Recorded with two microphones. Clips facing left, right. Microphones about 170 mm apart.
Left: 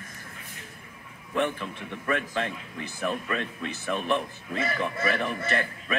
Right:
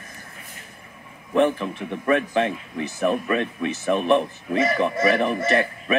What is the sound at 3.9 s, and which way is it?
Speech, 65° right (ahead or behind).